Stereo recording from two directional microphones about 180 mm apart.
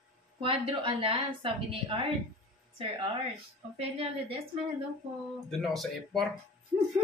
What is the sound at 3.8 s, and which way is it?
Speech, 35° right (ahead or behind).